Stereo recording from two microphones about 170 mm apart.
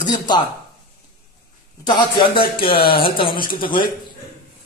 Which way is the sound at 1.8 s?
25° left (ahead or behind).